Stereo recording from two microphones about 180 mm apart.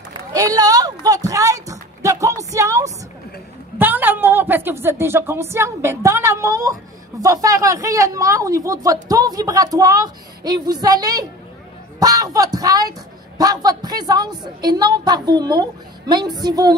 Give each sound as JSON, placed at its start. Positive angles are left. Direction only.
{"t": 0.1, "sound": "a woman's voice", "side_deg": -20}